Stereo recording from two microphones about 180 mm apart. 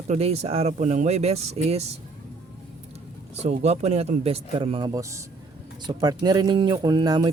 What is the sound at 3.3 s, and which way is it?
Speech, 40° right (ahead or behind).